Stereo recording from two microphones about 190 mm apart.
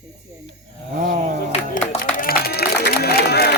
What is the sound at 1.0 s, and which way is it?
Speech, 45° right (ahead or behind).